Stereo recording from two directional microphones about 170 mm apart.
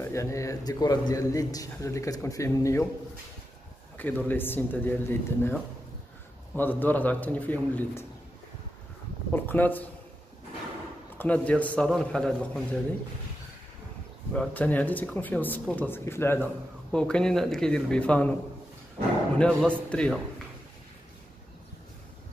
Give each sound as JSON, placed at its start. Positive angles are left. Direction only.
{"t": 0.0, "sound": "a man's voice", "side_deg": 15}
{"t": 3.9, "sound": "speech", "side_deg": 10}
{"t": 9.3, "sound": "speech", "side_deg": 10}
{"t": 11.1, "sound": "a man's voice", "side_deg": 10}
{"t": 14.3, "sound": "a man's voice", "side_deg": 10}
{"t": 19.0, "sound": "speech", "side_deg": -55}
{"t": 19.3, "sound": "speech", "side_deg": 5}